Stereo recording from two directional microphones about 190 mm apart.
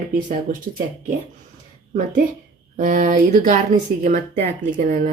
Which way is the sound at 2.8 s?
45° right (ahead or behind).